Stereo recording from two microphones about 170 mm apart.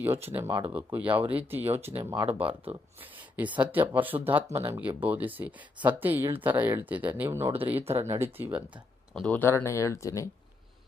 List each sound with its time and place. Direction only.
0.3 s speech: 10° right (ahead or behind)
2.4 s speech: 35° right (ahead or behind)
3.0 s speech: 10° right (ahead or behind)
9.2 s speech: 10° left (ahead or behind)